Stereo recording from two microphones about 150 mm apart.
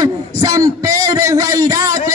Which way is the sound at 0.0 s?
25° right (ahead or behind).